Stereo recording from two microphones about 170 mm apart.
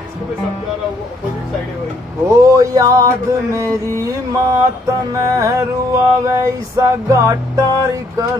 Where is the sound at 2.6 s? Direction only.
20° right (ahead or behind).